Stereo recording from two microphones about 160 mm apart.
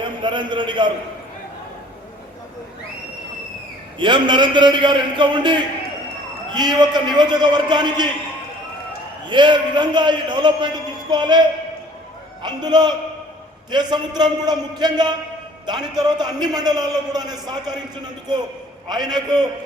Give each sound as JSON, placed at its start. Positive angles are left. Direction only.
{"t": 0.0, "sound": "a man's voice", "side_deg": -30}
{"t": 3.9, "sound": "a man's voice", "side_deg": -30}
{"t": 9.2, "sound": "a man's voice", "side_deg": -30}